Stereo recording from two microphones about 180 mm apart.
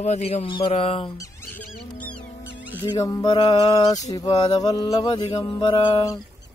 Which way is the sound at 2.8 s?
20° left (ahead or behind).